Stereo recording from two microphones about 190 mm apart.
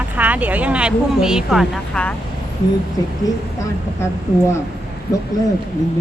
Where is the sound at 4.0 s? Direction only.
15° left (ahead or behind).